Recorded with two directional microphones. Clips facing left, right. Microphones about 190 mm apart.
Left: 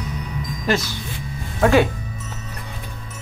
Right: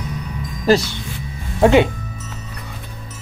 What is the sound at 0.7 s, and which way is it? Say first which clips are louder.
Speech: right 7 dB; 40° right (ahead or behind).